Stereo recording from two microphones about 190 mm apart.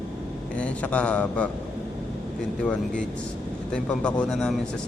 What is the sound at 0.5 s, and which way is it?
Speech, 5° left (ahead or behind).